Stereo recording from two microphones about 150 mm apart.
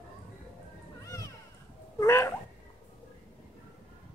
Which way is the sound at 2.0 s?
20° left (ahead or behind).